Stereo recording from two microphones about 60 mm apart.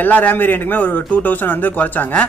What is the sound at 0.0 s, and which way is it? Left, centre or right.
Speech, left.